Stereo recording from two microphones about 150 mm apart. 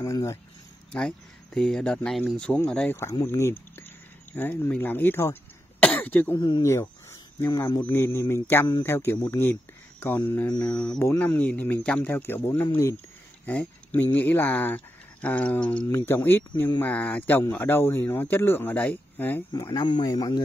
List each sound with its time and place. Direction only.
0.0 s speech: 20° left (ahead or behind)
0.9 s speech: 5° left (ahead or behind)
3.0 s speech: 20° left (ahead or behind)
6.3 s speech: 30° left (ahead or behind)
6.6 s speech: 20° left (ahead or behind)
19.5 s speech: 25° left (ahead or behind)